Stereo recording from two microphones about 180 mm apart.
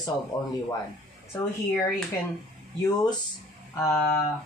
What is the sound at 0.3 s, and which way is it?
Speech, 25° left (ahead or behind).